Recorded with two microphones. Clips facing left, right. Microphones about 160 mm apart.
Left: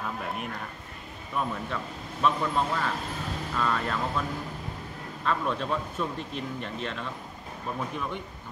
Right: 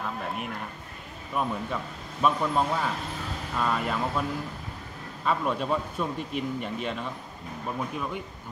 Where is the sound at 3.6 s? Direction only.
10° right (ahead or behind).